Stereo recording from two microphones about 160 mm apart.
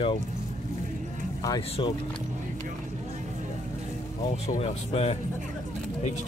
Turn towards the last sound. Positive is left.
turn(degrees=40)  # may be behind; listen again after turning